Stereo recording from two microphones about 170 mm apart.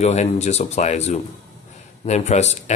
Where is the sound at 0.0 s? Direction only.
40° left (ahead or behind).